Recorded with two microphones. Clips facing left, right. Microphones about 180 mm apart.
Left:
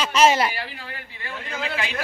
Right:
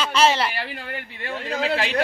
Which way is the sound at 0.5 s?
60° right (ahead or behind).